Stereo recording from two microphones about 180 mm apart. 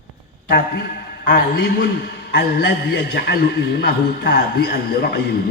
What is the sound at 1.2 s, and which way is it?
A man's voice, 60° left (ahead or behind).